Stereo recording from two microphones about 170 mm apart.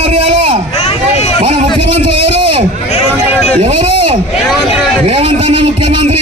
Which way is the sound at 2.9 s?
35° left (ahead or behind).